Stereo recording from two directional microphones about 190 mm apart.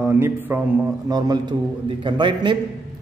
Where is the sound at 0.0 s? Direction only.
10° right (ahead or behind).